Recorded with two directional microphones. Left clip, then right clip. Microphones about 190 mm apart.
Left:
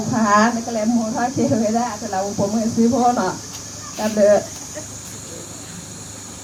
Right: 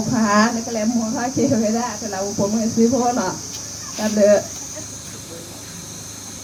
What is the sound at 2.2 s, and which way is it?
Speech, 25° right (ahead or behind).